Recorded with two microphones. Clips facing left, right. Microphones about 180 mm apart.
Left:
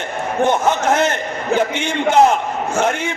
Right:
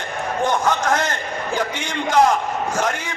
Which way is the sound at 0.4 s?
25° left (ahead or behind).